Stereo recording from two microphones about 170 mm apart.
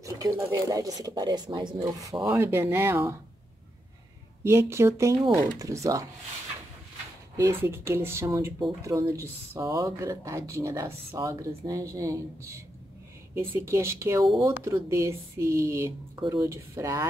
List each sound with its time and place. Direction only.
0.0 s speech: 20° right (ahead or behind)
4.4 s speech: 15° right (ahead or behind)
7.3 s speech: 15° right (ahead or behind)